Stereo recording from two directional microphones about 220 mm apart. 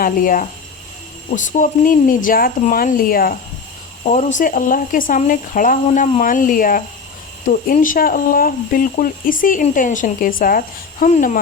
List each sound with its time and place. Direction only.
0.0 s speech: 40° left (ahead or behind)